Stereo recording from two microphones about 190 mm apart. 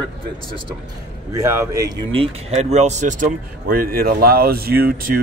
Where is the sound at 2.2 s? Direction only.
35° right (ahead or behind).